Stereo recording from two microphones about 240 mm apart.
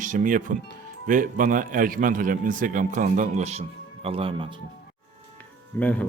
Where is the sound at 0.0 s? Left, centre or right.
Right.